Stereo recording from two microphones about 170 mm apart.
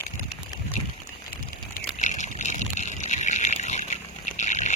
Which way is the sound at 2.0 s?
45° left (ahead or behind).